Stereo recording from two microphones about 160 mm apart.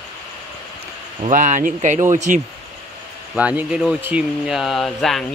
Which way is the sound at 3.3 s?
10° right (ahead or behind).